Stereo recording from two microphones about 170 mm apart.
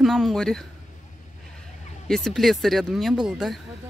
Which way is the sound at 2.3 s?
Centre (ahead or behind).